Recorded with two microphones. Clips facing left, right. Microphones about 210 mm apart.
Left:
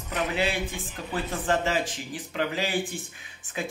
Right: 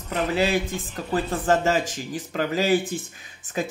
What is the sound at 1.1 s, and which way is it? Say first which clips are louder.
Speech: right 5 dB; 45° right (ahead or behind).